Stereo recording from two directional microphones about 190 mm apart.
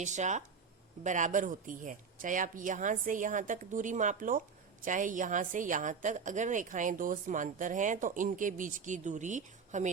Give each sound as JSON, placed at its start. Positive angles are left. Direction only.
{"t": 0.0, "sound": "a woman's voice", "side_deg": -40}